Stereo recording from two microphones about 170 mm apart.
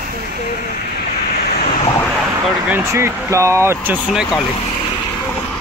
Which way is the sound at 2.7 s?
15° right (ahead or behind).